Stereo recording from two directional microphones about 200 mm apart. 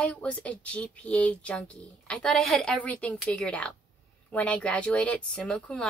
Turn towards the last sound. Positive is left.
turn(degrees=5)  # may be behind; listen again after turning